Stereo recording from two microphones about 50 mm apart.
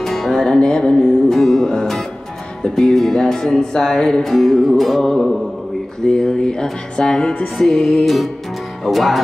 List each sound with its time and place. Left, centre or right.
0.0 s music: centre
7.5 s music: centre